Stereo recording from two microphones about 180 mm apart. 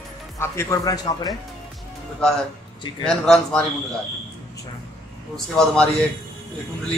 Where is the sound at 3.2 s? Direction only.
5° left (ahead or behind).